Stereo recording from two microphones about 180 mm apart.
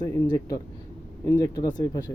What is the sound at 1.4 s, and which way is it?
Speech, 20° left (ahead or behind).